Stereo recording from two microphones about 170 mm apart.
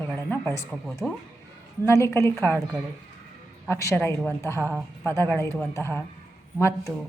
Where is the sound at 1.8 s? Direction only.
15° left (ahead or behind).